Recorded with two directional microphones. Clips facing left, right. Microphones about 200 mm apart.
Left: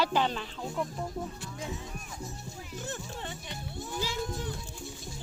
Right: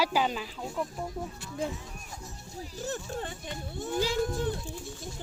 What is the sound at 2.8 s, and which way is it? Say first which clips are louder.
Speech: right 5 dB; 50° right (ahead or behind).